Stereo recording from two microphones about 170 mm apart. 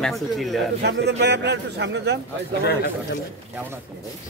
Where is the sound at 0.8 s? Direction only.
80° right.